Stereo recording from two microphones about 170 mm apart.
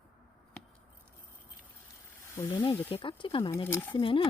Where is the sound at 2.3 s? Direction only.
25° left (ahead or behind).